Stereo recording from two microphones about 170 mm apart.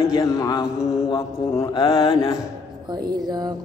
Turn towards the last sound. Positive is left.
turn(degrees=-25)  # may be behind; listen again after turning